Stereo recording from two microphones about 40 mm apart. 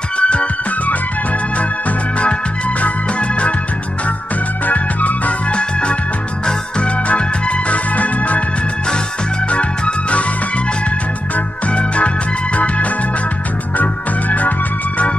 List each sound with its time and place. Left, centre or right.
0.2 s music: left
2.8 s music: left
4.6 s music: left
5.5 s music: left
9.5 s music: left
11.3 s music: left